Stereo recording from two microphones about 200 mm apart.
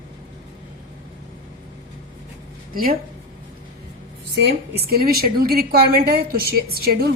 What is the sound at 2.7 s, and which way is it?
Speech, 45° right (ahead or behind).